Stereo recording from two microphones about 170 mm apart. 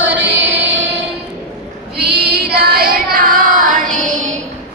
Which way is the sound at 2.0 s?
70° right (ahead or behind).